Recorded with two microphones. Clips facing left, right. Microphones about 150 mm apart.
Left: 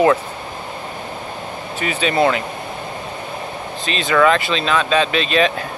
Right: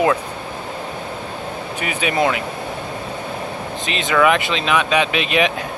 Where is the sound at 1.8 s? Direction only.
10° right (ahead or behind).